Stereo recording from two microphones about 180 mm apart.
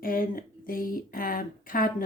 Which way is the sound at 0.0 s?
50° left (ahead or behind).